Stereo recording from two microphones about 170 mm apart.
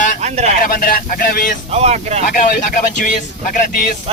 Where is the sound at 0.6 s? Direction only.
60° left (ahead or behind).